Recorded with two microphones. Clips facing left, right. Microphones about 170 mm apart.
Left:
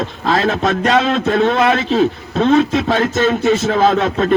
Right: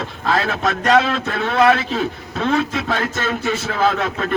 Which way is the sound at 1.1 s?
25° left (ahead or behind).